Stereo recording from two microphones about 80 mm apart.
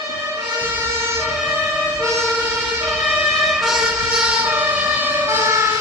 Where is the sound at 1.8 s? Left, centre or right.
Centre.